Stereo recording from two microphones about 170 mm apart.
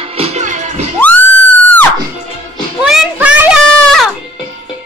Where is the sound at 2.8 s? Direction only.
5° right (ahead or behind).